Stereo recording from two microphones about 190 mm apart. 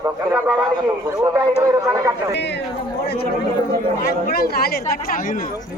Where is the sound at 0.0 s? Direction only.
15° right (ahead or behind).